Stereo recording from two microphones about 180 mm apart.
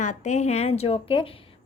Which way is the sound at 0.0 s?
40° left (ahead or behind).